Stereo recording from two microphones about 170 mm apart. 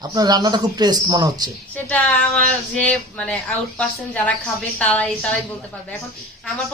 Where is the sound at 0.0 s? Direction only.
25° right (ahead or behind).